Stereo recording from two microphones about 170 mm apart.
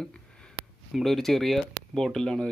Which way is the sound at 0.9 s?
Centre (ahead or behind).